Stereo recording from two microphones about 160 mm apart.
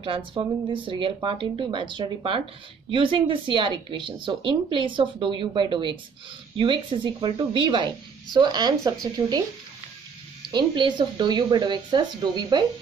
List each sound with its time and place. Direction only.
0.0 s speech: 35° right (ahead or behind)
10.4 s speech: 30° right (ahead or behind)